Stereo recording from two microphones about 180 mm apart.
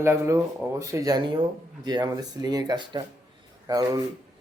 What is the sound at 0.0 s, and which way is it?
Speech, 15° right (ahead or behind).